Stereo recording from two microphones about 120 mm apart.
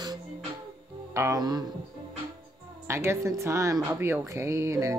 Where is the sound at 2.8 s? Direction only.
20° right (ahead or behind).